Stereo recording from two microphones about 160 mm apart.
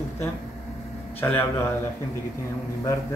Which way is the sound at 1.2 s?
10° left (ahead or behind).